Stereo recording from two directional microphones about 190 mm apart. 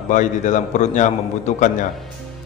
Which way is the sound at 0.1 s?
40° left (ahead or behind).